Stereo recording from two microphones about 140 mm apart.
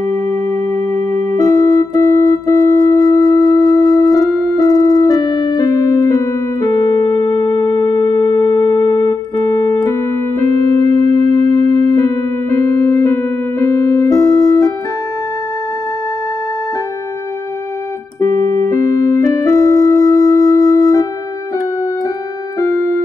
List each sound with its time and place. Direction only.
0.9 s music: 25° left (ahead or behind)
18.2 s keyboard: 25° left (ahead or behind)
22.6 s keyboard: 20° left (ahead or behind)